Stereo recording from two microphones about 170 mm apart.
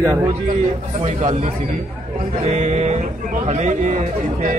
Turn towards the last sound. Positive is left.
turn(degrees=-40)  # may be behind; listen again after turning